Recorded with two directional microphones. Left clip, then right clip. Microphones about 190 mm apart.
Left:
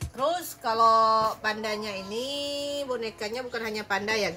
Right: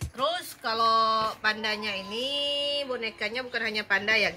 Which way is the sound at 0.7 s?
25° left (ahead or behind).